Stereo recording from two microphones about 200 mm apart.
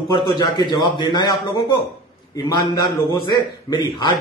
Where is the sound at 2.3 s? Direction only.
20° left (ahead or behind).